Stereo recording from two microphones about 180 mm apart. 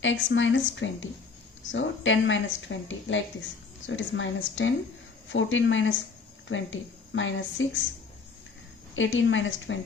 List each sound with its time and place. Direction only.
0.0 s speech: 90° left
9.0 s speech: 90° left